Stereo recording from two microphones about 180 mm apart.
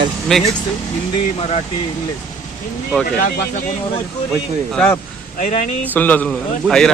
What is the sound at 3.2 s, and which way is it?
Speech, 55° left (ahead or behind).